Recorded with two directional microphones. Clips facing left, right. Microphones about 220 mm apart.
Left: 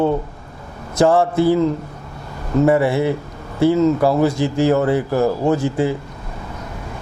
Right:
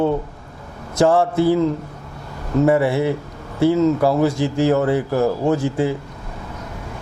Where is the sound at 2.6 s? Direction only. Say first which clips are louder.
Left 1 dB; 25° left (ahead or behind).